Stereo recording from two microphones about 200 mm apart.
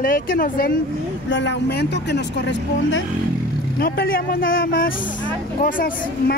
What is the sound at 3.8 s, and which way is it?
Speech, 50° left (ahead or behind).